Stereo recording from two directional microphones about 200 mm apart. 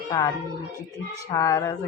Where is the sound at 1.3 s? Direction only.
15° left (ahead or behind).